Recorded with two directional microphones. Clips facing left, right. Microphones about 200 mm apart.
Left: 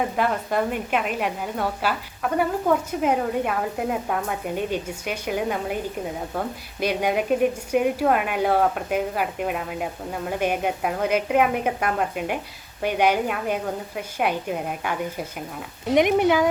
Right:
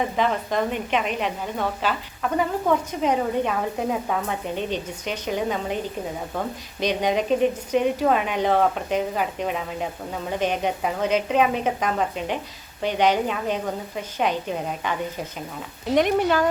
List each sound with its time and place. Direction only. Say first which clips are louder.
0.2 s speech: right 1 dB; 10° left (ahead or behind)